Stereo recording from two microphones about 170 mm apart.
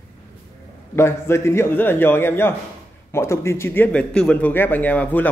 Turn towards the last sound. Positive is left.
turn(degrees=10)  # may be behind; listen again after turning